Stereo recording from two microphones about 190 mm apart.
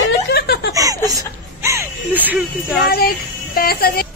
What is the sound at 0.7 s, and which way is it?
Laughter, 20° right (ahead or behind).